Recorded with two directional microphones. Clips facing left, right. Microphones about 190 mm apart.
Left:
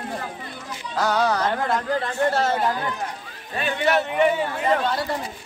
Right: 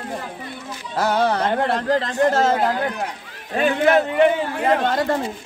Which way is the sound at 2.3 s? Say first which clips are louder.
Right 3 dB; 90° right.